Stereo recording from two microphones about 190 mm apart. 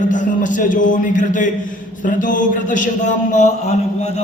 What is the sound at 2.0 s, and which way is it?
A man's voice, 45° left (ahead or behind).